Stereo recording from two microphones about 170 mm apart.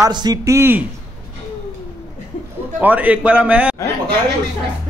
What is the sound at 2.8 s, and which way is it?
Speech, 10° right (ahead or behind).